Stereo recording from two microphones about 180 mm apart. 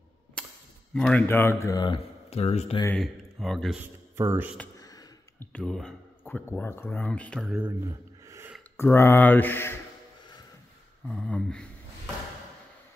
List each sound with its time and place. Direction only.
0.4 s a sound: 5° left (ahead or behind)
0.9 s speech: 5° left (ahead or behind); by 2.0 s 20° left (ahead or behind)
2.3 s speech: 35° left (ahead or behind)
3.0 s speech: centre (ahead or behind)
3.8 s speech: 15° right (ahead or behind)
4.7 s a sound: 20° left (ahead or behind)
5.5 s speech: 5° left (ahead or behind)
7.4 s a sound: 10° right (ahead or behind)
8.7 s speech: 15° left (ahead or behind)
11.1 s speech: 5° left (ahead or behind)